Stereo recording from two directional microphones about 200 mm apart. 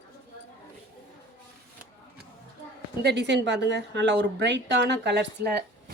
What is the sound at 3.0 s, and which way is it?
A woman's voice, 60° right (ahead or behind).